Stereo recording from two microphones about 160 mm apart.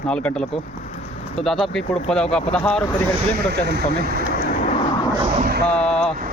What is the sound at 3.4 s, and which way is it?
Speech, 90° right.